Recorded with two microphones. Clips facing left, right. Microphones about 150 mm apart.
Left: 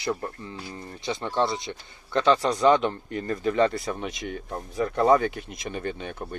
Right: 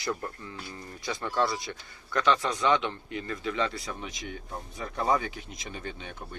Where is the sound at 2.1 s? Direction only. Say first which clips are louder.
Left 5 dB; 35° left (ahead or behind).